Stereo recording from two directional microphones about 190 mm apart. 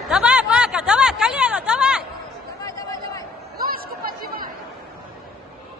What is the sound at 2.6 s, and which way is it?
Chatter, 20° left (ahead or behind).